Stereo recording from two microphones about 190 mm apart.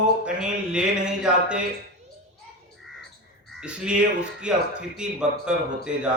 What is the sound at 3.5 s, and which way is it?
A man's voice, 5° right (ahead or behind).